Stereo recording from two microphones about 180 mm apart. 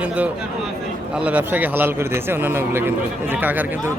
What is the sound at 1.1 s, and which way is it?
Speech, 10° right (ahead or behind).